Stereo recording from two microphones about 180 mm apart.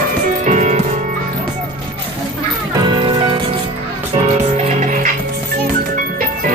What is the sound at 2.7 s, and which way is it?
Music, 25° right (ahead or behind).